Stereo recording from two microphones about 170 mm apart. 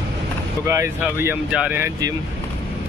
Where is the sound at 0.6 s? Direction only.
20° right (ahead or behind).